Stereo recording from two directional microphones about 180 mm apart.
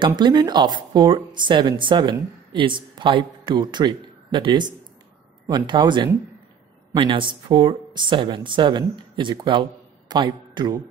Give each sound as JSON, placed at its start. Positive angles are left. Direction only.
{"t": 0.0, "sound": "speech", "side_deg": -25}